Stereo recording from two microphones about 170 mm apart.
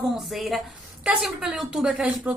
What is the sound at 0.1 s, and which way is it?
A woman's voice, centre (ahead or behind).